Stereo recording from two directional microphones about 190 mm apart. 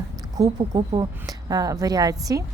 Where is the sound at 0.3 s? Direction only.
20° right (ahead or behind).